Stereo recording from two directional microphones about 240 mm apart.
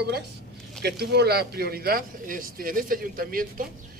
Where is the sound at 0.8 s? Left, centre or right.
Right.